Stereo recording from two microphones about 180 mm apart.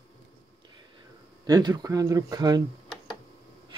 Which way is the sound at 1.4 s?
20° right (ahead or behind).